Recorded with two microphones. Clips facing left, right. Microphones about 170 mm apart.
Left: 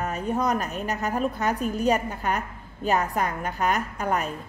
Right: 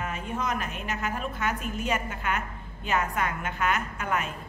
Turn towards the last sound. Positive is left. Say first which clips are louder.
# left 4 dB
turn(degrees=35)  # may be behind; listen again after turning